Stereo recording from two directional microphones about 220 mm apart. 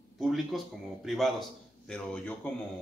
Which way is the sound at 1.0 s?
Centre (ahead or behind).